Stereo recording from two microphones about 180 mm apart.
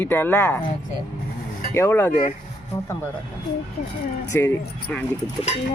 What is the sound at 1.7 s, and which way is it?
Speech, 15° left (ahead or behind).